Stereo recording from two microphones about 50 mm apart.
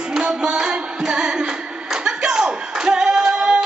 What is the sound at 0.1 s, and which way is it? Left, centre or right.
Music, centre.